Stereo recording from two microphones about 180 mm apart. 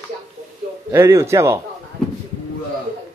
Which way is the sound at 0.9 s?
15° right (ahead or behind).